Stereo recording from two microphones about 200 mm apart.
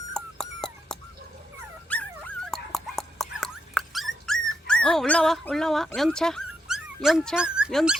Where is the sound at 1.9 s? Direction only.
5° left (ahead or behind).